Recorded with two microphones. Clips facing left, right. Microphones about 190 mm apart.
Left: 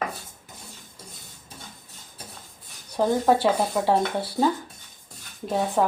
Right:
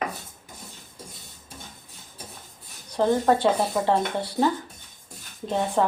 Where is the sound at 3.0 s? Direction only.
10° left (ahead or behind).